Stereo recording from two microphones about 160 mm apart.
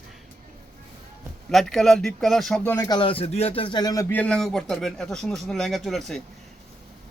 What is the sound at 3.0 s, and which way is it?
Speech, 35° left (ahead or behind).